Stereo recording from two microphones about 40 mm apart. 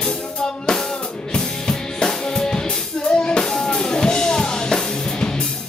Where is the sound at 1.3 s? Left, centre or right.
Centre.